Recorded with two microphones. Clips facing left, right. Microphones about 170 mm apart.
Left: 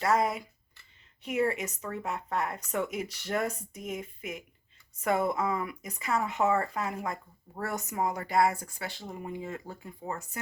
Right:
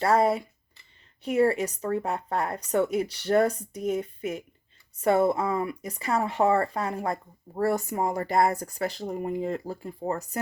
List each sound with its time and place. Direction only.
0.0 s speech: 30° right (ahead or behind)